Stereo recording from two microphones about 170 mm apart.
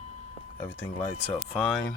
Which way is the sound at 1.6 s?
Centre (ahead or behind).